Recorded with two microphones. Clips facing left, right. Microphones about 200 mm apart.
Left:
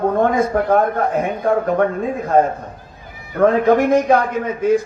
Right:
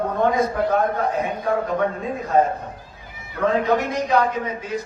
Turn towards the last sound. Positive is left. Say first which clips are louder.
# left 10 dB
turn(degrees=50)  # may be behind; listen again after turning